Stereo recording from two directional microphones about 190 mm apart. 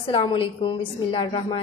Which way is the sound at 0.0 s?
30° left (ahead or behind).